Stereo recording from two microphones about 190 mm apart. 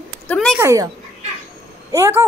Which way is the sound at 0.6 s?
15° right (ahead or behind).